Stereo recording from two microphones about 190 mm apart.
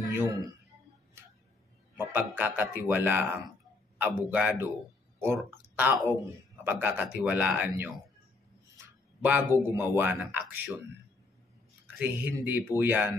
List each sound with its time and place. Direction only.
0.1 s a man's voice: 15° right (ahead or behind)
2.0 s a man's voice: 10° right (ahead or behind)
9.2 s a man's voice: 10° right (ahead or behind)
12.0 s a man's voice: 10° right (ahead or behind)